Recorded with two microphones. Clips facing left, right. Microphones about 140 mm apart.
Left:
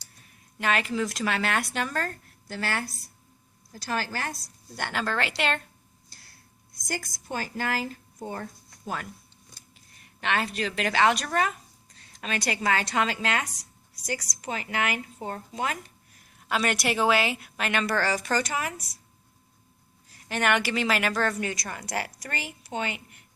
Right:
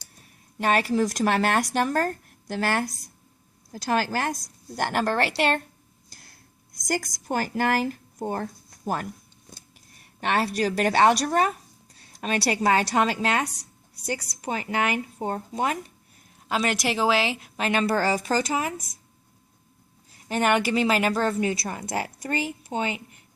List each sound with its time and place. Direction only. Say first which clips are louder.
0.6 s speech: right 4 dB; 40° right (ahead or behind)
6.8 s speech: right 7 dB; 45° right (ahead or behind)
10.2 s a woman's voice: right 4 dB; 40° right (ahead or behind)
16.9 s a woman's voice: even; 25° right (ahead or behind)
20.3 s a woman's voice: right 3 dB; 35° right (ahead or behind)